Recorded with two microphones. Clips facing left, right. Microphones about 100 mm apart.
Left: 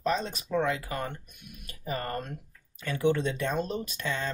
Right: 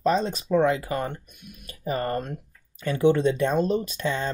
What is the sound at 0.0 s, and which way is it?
Speech, 30° right (ahead or behind).